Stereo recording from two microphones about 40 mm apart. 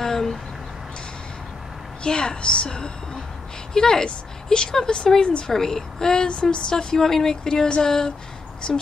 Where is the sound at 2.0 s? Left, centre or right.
Left.